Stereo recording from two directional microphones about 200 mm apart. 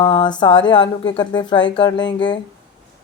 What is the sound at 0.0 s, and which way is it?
A woman's voice, 20° left (ahead or behind).